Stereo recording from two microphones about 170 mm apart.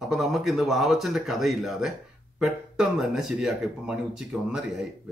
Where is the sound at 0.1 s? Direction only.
Centre (ahead or behind).